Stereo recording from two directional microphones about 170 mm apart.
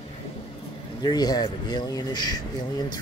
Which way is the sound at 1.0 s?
25° left (ahead or behind).